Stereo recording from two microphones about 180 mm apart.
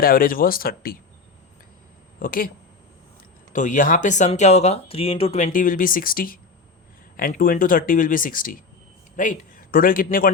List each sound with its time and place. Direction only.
0.0 s speech: 55° left (ahead or behind)
2.1 s speech: 50° left (ahead or behind)
3.5 s speech: 45° left (ahead or behind)
5.5 s speech: 50° left (ahead or behind)